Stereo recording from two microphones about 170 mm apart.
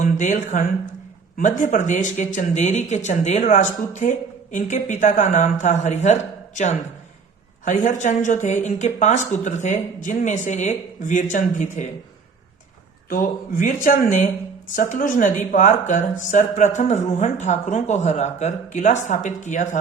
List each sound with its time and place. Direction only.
0.0 s speech: 50° left (ahead or behind)
13.1 s speech: 55° left (ahead or behind)